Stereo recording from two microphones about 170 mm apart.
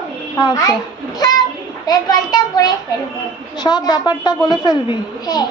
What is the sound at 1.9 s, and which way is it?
A child's voice, 20° left (ahead or behind).